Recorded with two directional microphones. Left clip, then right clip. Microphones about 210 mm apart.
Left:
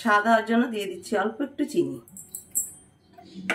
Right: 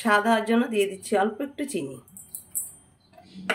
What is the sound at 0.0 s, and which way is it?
Speech, 45° right (ahead or behind).